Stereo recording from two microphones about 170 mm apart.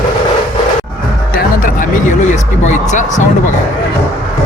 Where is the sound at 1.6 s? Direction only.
50° left (ahead or behind).